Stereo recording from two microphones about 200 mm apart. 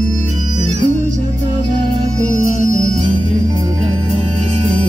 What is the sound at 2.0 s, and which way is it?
Music, 35° right (ahead or behind).